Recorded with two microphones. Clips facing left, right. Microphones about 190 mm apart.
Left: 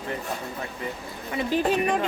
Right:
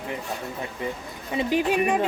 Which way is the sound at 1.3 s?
15° right (ahead or behind).